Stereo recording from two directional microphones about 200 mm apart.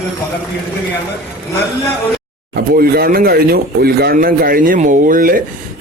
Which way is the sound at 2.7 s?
50° right (ahead or behind).